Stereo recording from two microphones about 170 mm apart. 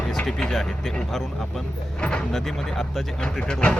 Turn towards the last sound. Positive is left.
turn(degrees=5)  # may be behind; listen again after turning